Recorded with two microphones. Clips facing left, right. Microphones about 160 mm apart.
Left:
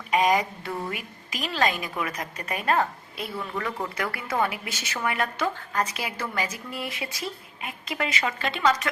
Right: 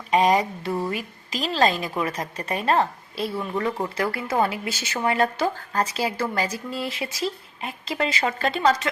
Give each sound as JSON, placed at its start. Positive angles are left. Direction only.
{"t": 0.1, "sound": "a woman's voice", "side_deg": -30}